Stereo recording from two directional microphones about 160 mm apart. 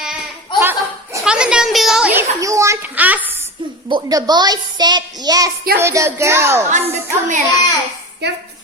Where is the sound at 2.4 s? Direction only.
20° right (ahead or behind).